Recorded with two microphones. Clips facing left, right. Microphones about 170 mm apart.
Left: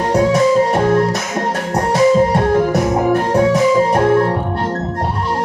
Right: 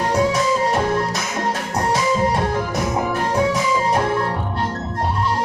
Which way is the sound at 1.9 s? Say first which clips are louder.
Left 8 dB; 60° left (ahead or behind).